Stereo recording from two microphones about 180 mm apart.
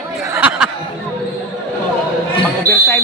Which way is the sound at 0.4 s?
10° right (ahead or behind).